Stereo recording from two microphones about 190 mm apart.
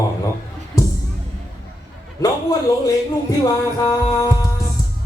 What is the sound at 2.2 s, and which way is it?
A man's voice, 15° left (ahead or behind).